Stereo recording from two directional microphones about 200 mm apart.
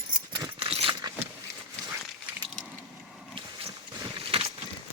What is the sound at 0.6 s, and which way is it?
Keys jangling, 30° right (ahead or behind).